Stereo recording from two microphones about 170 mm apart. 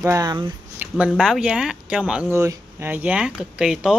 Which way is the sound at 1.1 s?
Centre (ahead or behind).